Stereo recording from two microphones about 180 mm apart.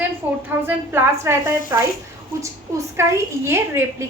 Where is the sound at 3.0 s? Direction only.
15° right (ahead or behind).